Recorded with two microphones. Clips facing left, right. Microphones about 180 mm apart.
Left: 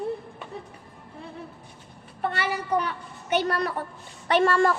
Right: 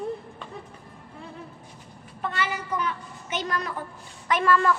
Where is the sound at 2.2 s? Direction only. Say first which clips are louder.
Left 1 dB; 60° left (ahead or behind).